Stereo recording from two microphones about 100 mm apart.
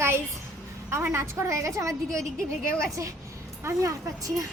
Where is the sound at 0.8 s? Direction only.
25° right (ahead or behind).